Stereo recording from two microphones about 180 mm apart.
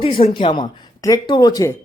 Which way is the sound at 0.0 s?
30° left (ahead or behind).